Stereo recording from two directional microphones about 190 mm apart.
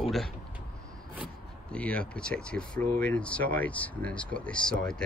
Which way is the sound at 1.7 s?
5° left (ahead or behind).